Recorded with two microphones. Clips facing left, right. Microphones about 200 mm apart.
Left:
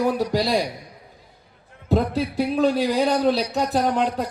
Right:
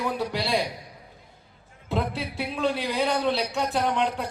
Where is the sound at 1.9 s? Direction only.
40° left (ahead or behind).